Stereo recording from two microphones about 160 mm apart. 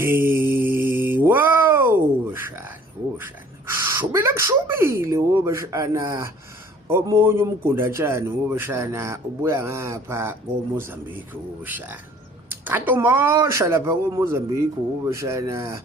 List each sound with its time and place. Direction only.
0.0 s mantra: 15° right (ahead or behind)
2.3 s a man's voice: 15° right (ahead or behind)